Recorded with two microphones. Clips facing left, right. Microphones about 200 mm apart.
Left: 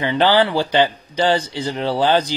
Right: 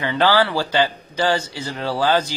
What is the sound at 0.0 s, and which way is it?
Speech, 20° left (ahead or behind).